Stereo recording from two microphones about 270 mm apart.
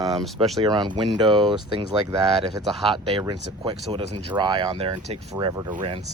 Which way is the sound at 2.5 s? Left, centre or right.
Centre.